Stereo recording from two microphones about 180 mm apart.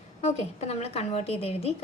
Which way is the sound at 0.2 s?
40° left (ahead or behind).